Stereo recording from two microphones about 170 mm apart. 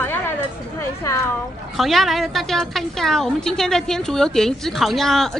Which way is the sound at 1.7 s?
Centre (ahead or behind).